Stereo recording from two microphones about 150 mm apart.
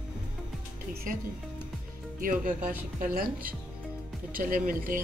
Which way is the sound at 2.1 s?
65° right (ahead or behind).